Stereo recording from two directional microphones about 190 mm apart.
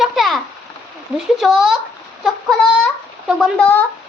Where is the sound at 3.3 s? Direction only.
Centre (ahead or behind).